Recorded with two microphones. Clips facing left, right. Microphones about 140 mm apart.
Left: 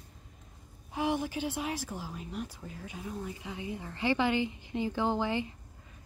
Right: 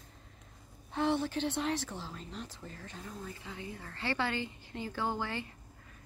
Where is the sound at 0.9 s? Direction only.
10° left (ahead or behind).